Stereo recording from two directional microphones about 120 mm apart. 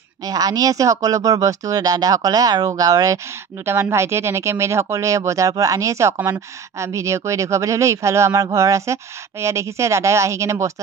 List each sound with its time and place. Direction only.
0.2 s speech: 30° right (ahead or behind)